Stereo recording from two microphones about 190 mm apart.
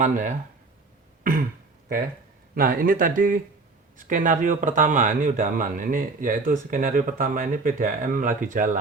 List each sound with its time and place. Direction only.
0.0 s speech: 40° right (ahead or behind)
1.2 s throat clearing: 50° right (ahead or behind)
2.6 s speech: 50° right (ahead or behind)